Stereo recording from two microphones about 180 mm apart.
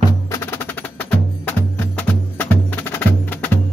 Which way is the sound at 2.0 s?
10° left (ahead or behind).